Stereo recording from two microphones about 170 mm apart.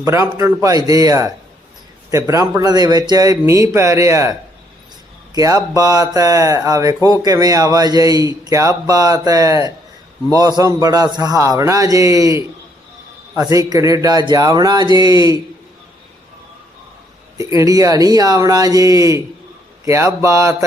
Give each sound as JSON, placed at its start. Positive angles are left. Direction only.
{"t": 0.0, "sound": "mantra", "side_deg": -20}
{"t": 0.9, "sound": "a man's voice", "side_deg": -20}
{"t": 5.3, "sound": "a man's voice", "side_deg": -20}
{"t": 17.3, "sound": "a man's voice", "side_deg": -20}
{"t": 19.8, "sound": "mantra", "side_deg": -15}